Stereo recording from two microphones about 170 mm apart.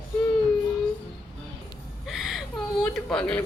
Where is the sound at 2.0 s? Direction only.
Centre (ahead or behind).